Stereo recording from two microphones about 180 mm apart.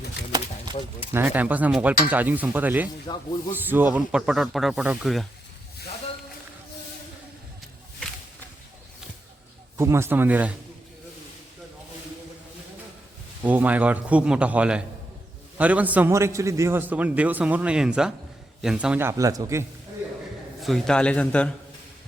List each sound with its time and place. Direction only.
0.3 s a sound: 20° right (ahead or behind)
1.1 s a man's voice: 10° right (ahead or behind)
9.7 s a man's voice: 15° right (ahead or behind)
13.4 s a man's voice: 10° right (ahead or behind)
20.6 s speech: centre (ahead or behind)